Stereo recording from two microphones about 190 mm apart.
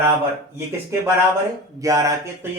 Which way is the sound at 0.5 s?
15° right (ahead or behind).